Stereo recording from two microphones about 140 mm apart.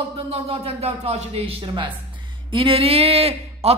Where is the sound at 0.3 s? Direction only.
45° right (ahead or behind).